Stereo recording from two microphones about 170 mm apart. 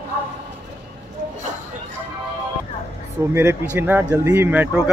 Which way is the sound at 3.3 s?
15° right (ahead or behind).